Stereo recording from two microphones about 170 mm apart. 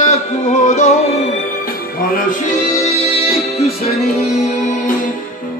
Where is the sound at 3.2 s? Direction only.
35° left (ahead or behind).